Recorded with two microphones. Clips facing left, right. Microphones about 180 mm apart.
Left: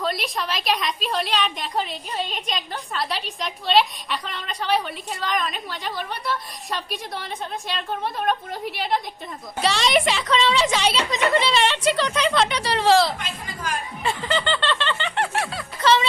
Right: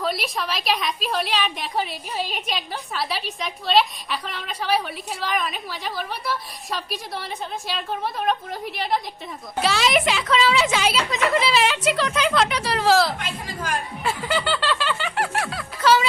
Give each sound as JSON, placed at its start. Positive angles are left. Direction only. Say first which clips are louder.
{"t": 0.0, "sound": "a woman's voice", "louder": "even", "side_deg": 0}
{"t": 13.1, "sound": "a woman's voice", "louder": "right 3 dB", "side_deg": -55}
{"t": 14.0, "sound": "snicker", "louder": "left 1 dB", "side_deg": -5}